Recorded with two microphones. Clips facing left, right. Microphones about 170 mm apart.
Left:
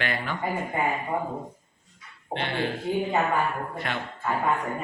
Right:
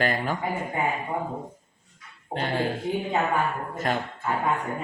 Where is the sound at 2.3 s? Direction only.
40° right (ahead or behind).